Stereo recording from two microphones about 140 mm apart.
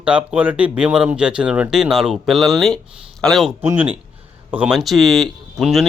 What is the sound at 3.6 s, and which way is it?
A man's voice, 15° right (ahead or behind).